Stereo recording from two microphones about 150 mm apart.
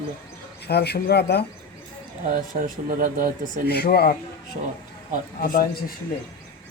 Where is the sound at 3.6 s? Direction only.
90° left.